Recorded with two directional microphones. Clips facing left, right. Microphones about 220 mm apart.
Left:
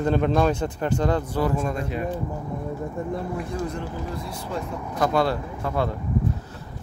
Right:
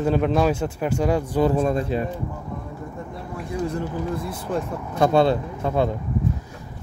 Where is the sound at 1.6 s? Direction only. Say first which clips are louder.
Right 5 dB; 30° right (ahead or behind).